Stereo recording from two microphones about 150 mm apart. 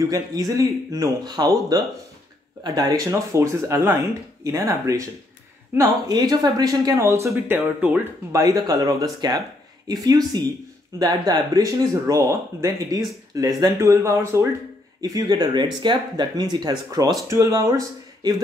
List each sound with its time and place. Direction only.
0.1 s speech: 25° right (ahead or behind)